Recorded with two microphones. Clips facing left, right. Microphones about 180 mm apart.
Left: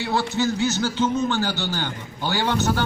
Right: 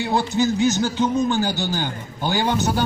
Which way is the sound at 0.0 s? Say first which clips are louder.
Right 3 dB; 15° right (ahead or behind).